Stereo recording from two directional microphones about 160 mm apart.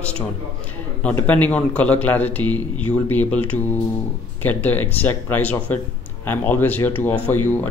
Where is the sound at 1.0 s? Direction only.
10° left (ahead or behind).